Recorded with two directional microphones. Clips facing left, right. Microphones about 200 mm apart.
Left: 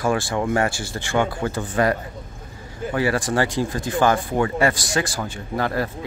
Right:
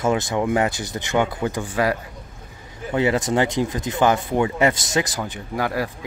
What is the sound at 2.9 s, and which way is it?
Speech, 20° right (ahead or behind).